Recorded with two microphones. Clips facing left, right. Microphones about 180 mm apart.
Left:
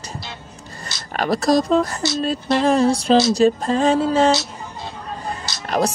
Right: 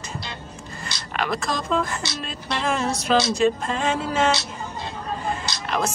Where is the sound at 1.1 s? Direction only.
40° left (ahead or behind).